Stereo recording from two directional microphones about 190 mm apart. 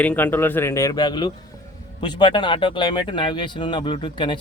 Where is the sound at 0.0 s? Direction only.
10° left (ahead or behind).